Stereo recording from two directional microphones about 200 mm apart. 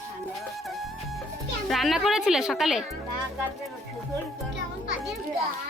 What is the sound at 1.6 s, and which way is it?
A woman's voice, centre (ahead or behind).